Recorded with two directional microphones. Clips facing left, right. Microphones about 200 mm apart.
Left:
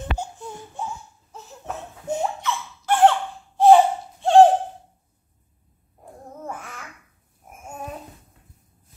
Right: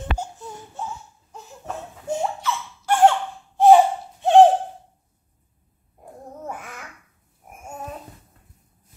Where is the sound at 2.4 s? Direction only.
10° right (ahead or behind).